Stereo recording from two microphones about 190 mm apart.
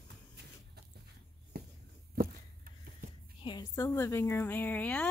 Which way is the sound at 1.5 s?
55° right (ahead or behind).